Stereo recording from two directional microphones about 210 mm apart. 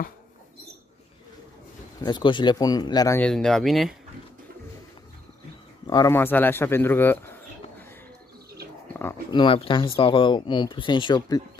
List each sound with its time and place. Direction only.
2.0 s speech: 20° left (ahead or behind)
3.2 s speech: 5° left (ahead or behind)
5.9 s speech: 15° left (ahead or behind)
8.9 s speech: 10° left (ahead or behind)
9.4 s speech: 25° left (ahead or behind)